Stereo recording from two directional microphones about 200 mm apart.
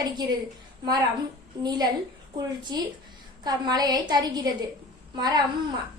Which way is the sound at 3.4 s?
20° right (ahead or behind).